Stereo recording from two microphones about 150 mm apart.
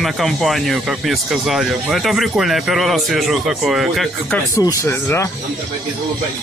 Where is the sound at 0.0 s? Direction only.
Centre (ahead or behind).